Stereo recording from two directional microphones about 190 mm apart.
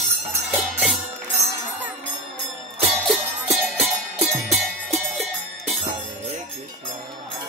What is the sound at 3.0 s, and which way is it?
Music, centre (ahead or behind).